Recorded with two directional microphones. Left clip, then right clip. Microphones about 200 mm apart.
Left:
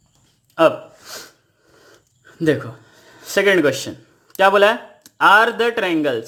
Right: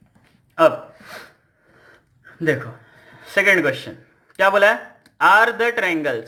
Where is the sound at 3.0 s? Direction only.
45° left (ahead or behind).